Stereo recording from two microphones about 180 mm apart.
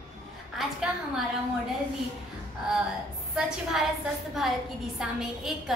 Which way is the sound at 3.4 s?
Centre (ahead or behind).